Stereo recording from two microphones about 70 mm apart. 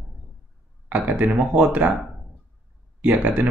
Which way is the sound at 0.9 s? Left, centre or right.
Right.